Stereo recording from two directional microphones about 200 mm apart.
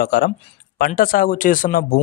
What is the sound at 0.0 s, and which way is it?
Speech, 45° left (ahead or behind).